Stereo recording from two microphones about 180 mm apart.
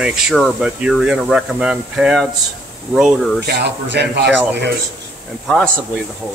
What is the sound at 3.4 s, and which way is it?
Speech, 65° right (ahead or behind).